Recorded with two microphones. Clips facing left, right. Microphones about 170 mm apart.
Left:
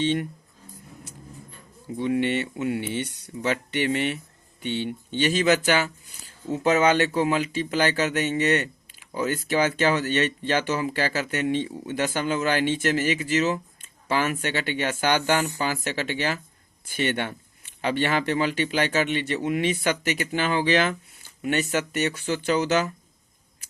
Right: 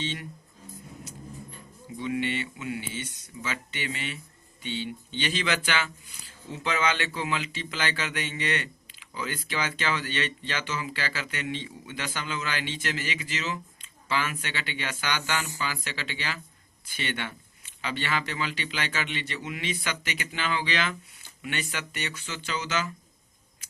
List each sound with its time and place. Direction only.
0.0 s speech: 55° left (ahead or behind)
2.0 s speech: 50° left (ahead or behind)